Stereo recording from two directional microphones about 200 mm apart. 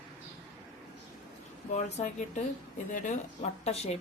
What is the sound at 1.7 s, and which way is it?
Speech, 35° left (ahead or behind).